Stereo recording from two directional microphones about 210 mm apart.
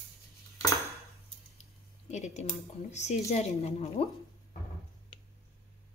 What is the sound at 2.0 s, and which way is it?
A woman's voice, 35° left (ahead or behind).